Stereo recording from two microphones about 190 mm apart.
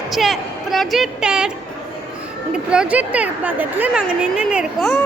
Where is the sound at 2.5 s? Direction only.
5° right (ahead or behind).